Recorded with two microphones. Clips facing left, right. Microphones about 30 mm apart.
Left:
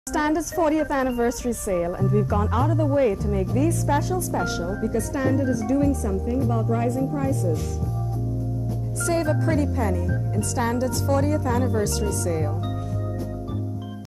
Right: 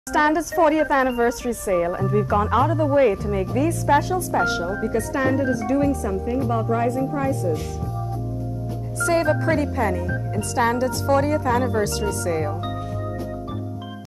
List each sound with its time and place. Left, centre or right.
0.1 s speech: right
9.0 s speech: right